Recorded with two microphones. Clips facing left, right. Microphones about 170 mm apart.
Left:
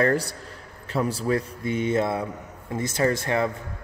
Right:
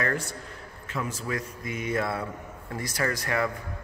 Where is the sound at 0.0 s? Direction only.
35° left (ahead or behind).